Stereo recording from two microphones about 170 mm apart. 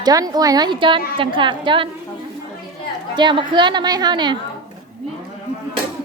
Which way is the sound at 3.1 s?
25° right (ahead or behind).